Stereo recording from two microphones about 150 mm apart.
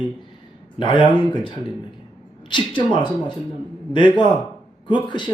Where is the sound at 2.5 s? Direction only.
30° left (ahead or behind).